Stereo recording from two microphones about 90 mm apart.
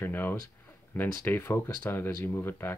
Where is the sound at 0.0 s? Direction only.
25° left (ahead or behind).